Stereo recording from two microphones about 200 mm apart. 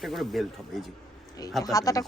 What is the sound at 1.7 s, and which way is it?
Speech, 15° left (ahead or behind).